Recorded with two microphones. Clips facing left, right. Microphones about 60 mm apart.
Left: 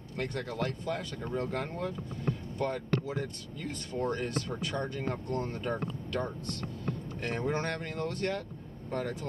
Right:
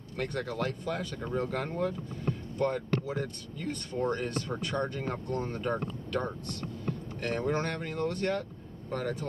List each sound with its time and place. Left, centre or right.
0.2 s speech: centre